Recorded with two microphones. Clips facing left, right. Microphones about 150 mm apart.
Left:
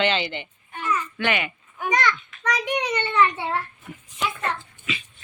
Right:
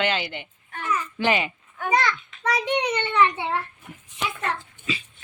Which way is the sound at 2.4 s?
25° right (ahead or behind).